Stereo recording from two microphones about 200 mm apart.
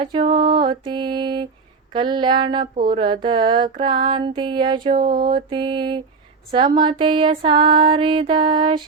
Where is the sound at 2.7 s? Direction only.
45° right (ahead or behind).